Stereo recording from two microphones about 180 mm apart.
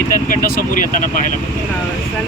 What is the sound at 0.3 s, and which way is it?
Speech, 50° left (ahead or behind).